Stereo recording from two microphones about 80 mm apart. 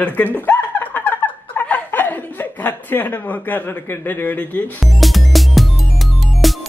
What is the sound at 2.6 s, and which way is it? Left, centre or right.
A woman's voice, left.